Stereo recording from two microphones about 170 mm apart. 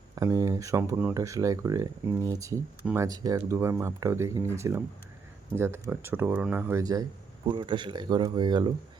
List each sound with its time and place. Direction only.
0.2 s speech: 20° right (ahead or behind)